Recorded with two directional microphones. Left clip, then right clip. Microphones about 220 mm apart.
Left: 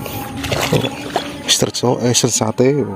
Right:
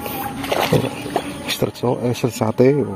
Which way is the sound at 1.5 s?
15° left (ahead or behind).